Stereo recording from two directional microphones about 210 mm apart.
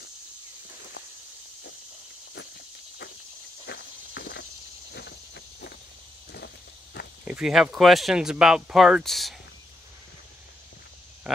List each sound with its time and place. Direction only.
3.6 s walk: 50° left (ahead or behind)
7.2 s speech: 5° right (ahead or behind)